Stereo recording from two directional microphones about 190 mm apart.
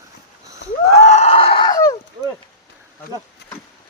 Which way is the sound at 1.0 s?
35° left (ahead or behind).